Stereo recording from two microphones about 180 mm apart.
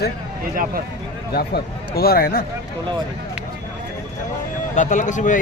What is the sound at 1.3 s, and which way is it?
Speech, 60° left (ahead or behind).